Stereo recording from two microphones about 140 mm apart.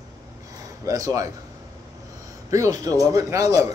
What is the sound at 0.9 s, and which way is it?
Speech, 25° right (ahead or behind).